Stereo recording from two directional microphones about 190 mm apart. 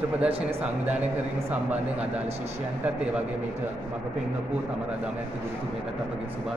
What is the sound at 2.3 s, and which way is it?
Speech, 35° right (ahead or behind).